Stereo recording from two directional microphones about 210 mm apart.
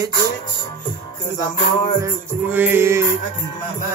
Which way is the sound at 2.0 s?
10° right (ahead or behind).